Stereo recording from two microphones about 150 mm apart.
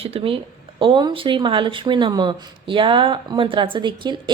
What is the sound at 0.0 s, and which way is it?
Speech, 40° right (ahead or behind).